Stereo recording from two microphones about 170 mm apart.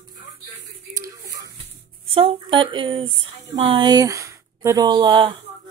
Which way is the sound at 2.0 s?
35° right (ahead or behind).